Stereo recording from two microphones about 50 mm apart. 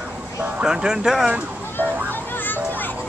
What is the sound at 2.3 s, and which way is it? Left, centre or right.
Children playing, left.